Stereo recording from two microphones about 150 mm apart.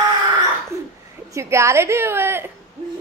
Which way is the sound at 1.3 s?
20° right (ahead or behind).